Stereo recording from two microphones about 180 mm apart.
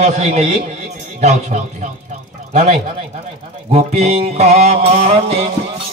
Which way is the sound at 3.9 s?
35° right (ahead or behind).